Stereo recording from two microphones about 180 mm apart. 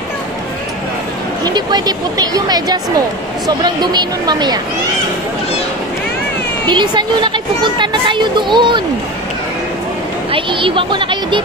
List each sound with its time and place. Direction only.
1.4 s speech: 25° right (ahead or behind)
6.7 s speech: 25° right (ahead or behind)
10.3 s speech: 30° right (ahead or behind)